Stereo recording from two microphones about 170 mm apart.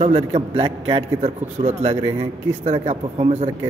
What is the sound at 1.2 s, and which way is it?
A man's voice, 40° right (ahead or behind).